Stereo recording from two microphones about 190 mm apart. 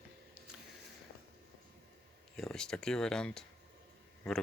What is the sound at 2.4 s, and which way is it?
Speech, 5° left (ahead or behind).